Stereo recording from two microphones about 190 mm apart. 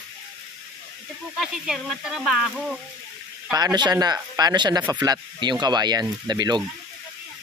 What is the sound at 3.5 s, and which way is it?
Speech, 20° right (ahead or behind).